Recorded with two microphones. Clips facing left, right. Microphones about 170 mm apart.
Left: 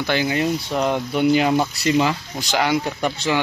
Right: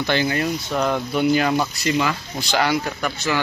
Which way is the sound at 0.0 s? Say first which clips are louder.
Left 1 dB; 10° left (ahead or behind).